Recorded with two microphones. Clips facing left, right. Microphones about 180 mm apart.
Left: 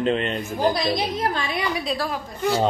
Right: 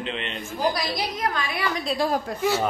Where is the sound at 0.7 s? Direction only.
25° left (ahead or behind).